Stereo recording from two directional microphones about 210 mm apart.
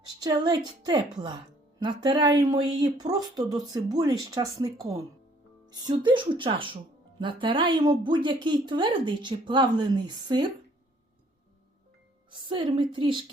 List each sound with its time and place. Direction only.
0.2 s speech: 20° right (ahead or behind)
12.3 s speech: 20° right (ahead or behind)